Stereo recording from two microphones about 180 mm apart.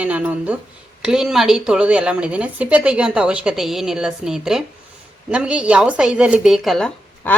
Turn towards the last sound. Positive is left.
turn(degrees=5)  # may be behind; listen again after turning